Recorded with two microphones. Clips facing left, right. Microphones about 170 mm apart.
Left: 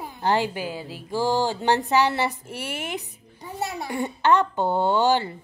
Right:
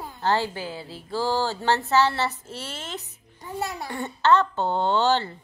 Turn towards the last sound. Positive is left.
turn(degrees=10)  # may be behind; listen again after turning